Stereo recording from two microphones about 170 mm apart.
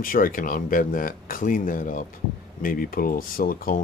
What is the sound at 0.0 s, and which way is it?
Speech, 55° left (ahead or behind).